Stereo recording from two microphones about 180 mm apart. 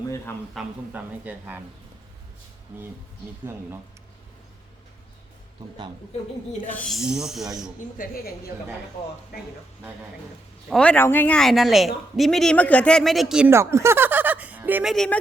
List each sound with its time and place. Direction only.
0.5 s speech: 10° right (ahead or behind)
6.7 s a man's voice: 5° left (ahead or behind)
7.9 s a woman's voice: 50° left (ahead or behind)
10.7 s a man's voice: 5° left (ahead or behind)
13.5 s speech: 15° right (ahead or behind)
14.9 s a man's voice: 5° left (ahead or behind)